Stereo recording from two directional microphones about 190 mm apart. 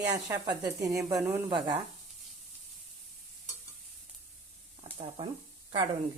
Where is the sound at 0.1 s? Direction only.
20° right (ahead or behind).